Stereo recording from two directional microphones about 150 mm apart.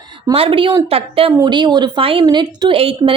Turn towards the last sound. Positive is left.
turn(degrees=-35)  # may be behind; listen again after turning